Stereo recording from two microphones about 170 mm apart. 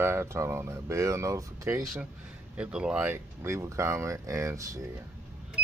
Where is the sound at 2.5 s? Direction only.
5° right (ahead or behind).